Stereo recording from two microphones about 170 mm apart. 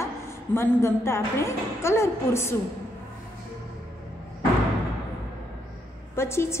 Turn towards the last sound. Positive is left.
turn(degrees=15)  # may be behind; listen again after turning